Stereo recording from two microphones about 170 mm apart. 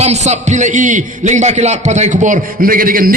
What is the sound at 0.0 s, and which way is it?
A man's voice, 40° right (ahead or behind).